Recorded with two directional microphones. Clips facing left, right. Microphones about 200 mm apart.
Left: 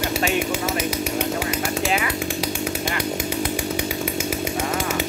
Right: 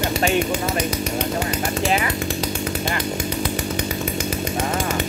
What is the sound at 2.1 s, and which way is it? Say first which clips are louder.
Chainsaw: right 1 dB; 10° left (ahead or behind).